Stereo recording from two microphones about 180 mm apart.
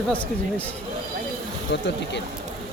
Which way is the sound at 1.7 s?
75° left (ahead or behind).